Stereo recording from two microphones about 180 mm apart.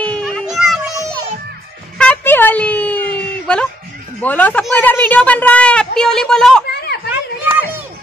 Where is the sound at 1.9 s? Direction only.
10° left (ahead or behind).